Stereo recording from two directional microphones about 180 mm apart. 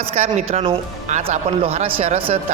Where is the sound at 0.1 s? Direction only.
35° right (ahead or behind).